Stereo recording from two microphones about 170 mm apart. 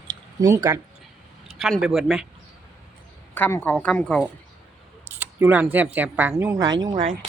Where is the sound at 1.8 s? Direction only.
5° right (ahead or behind).